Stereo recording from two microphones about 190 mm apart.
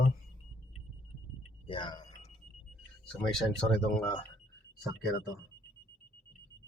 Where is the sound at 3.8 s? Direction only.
Centre (ahead or behind).